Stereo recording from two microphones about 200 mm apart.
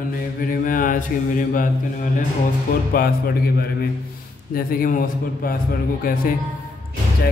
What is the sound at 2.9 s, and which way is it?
Speech, 45° left (ahead or behind).